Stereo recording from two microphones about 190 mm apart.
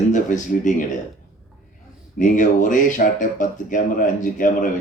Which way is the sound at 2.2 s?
40° left (ahead or behind).